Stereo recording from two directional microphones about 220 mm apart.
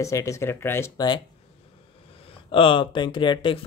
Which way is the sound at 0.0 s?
15° left (ahead or behind).